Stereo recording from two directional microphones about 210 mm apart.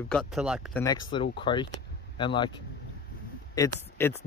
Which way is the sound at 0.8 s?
20° left (ahead or behind).